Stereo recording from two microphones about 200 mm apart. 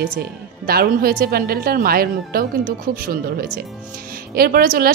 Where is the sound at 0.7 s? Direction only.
50° right (ahead or behind).